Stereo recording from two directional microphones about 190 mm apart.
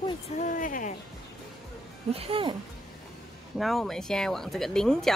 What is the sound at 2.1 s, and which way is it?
Speech, 30° right (ahead or behind).